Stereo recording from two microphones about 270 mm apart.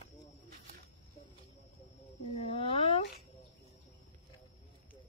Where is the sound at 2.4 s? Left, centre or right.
Left.